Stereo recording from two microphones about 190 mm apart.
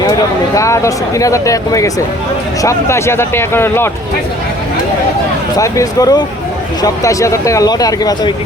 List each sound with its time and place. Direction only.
0.5 s speech: 15° left (ahead or behind)
5.5 s speech: 15° left (ahead or behind)